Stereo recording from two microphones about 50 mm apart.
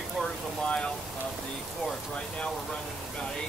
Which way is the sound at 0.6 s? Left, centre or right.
Left.